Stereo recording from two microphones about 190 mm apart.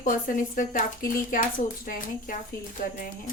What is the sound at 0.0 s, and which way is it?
A woman's voice, 45° left (ahead or behind).